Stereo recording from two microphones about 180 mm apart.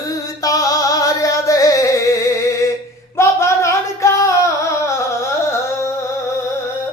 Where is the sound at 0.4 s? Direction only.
20° left (ahead or behind).